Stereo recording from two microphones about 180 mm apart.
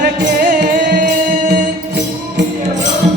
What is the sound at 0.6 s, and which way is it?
Music, 55° right (ahead or behind).